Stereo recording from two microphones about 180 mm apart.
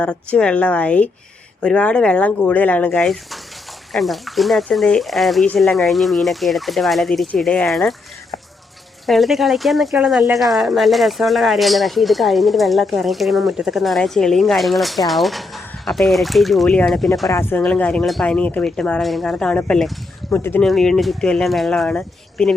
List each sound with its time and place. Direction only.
0.0 s a woman's voice: 5° left (ahead or behind)
9.0 s speech: centre (ahead or behind)
17.2 s a woman's voice: 15° left (ahead or behind)